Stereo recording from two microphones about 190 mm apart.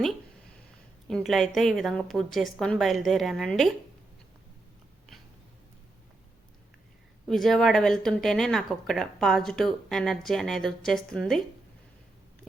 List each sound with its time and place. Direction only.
1.0 s speech: centre (ahead or behind)
7.3 s speech: centre (ahead or behind)